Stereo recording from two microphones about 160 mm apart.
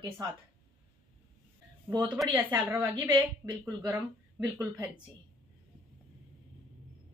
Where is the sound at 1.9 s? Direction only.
15° right (ahead or behind).